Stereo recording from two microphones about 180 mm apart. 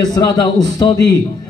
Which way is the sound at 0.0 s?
20° left (ahead or behind).